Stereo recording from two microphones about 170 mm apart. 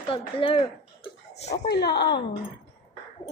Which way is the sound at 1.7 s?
75° left (ahead or behind).